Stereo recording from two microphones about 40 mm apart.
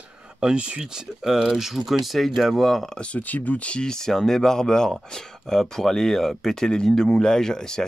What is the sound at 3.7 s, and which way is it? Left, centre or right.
Speech, centre.